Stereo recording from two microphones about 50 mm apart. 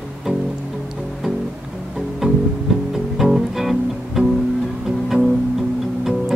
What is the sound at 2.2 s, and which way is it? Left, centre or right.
Music, right.